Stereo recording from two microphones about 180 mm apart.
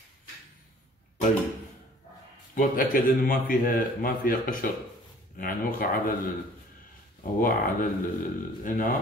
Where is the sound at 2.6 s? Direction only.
50° left (ahead or behind).